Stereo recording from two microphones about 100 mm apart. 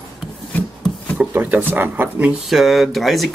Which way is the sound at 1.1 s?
15° right (ahead or behind).